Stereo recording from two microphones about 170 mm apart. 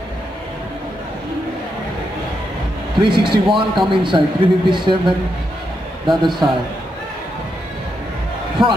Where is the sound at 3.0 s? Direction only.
30° right (ahead or behind).